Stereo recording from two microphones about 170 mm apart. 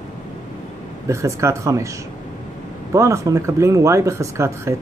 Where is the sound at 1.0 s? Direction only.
15° right (ahead or behind).